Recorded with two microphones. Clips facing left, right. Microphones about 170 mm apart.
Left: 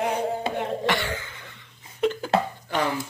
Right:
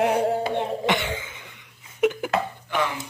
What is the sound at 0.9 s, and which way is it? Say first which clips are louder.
Cough: right 1 dB; 20° right (ahead or behind).